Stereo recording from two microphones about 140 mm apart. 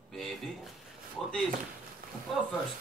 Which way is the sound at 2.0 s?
90° right.